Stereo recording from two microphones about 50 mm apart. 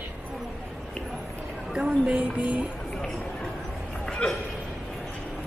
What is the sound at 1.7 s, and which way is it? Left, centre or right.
Speech, centre.